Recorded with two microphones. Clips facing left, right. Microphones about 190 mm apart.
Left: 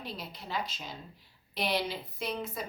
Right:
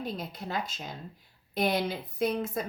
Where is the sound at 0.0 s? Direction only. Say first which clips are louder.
Right 6 dB; 50° right (ahead or behind).